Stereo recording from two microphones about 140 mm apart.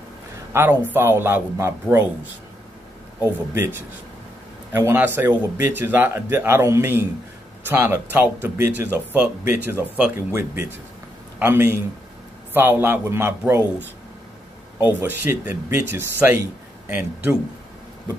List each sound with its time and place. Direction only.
0.5 s a man's voice: 15° right (ahead or behind)
3.2 s a man's voice: 15° right (ahead or behind)
14.8 s speech: 15° right (ahead or behind)